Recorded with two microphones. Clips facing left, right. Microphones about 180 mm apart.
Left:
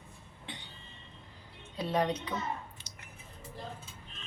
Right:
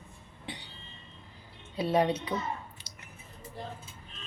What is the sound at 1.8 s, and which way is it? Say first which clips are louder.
Speech: right 4 dB; 10° right (ahead or behind).